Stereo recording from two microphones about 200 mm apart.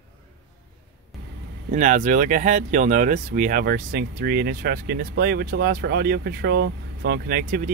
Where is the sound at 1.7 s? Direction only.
40° right (ahead or behind).